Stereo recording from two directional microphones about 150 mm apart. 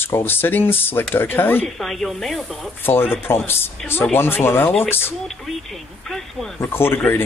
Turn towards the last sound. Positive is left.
turn(degrees=15)  # may be behind; listen again after turning